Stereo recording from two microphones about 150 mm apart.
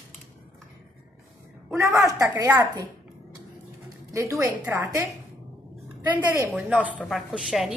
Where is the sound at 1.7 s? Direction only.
20° right (ahead or behind).